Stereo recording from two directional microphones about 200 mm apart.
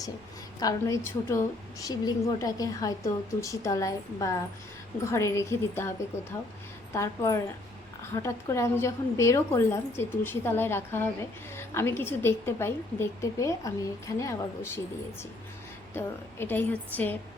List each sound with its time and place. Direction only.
0.6 s a woman's voice: 15° left (ahead or behind)
6.9 s a woman's voice: 15° left (ahead or behind)
16.0 s a woman's voice: 10° left (ahead or behind)